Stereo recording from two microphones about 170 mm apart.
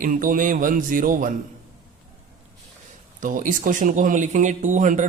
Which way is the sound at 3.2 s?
50° right (ahead or behind).